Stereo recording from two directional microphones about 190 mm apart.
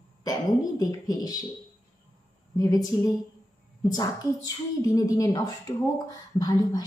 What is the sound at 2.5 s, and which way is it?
A woman's voice, 20° left (ahead or behind).